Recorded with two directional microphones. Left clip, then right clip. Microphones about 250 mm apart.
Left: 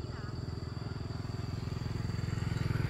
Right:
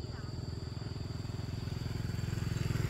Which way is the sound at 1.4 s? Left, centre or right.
Right.